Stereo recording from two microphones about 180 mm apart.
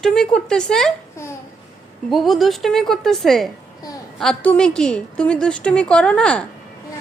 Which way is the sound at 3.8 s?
20° left (ahead or behind).